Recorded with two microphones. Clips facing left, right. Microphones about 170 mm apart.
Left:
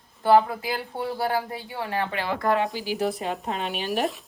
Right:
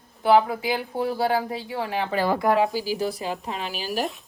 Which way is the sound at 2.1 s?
40° right (ahead or behind).